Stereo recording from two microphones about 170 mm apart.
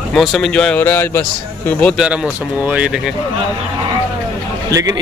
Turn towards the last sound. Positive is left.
turn(degrees=-20)  # may be behind; listen again after turning